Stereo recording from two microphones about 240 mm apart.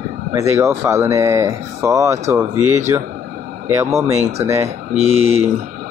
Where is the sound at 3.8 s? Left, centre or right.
Centre.